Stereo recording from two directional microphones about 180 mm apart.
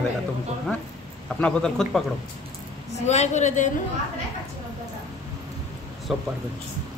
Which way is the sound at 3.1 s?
40° left (ahead or behind).